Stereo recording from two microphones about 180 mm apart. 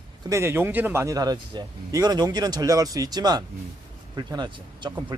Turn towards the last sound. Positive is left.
turn(degrees=-25)  # may be behind; listen again after turning